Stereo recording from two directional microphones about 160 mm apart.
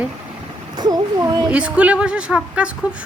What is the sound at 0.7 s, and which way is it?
Speech, 25° right (ahead or behind).